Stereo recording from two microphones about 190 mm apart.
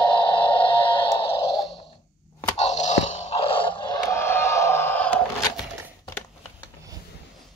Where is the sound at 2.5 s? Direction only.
35° left (ahead or behind); by 5.2 s 10° left (ahead or behind).